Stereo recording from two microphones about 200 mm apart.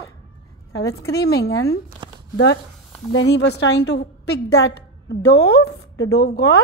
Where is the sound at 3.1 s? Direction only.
60° left (ahead or behind).